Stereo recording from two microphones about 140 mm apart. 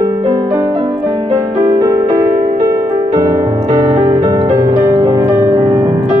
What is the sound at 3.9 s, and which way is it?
Music, 45° right (ahead or behind).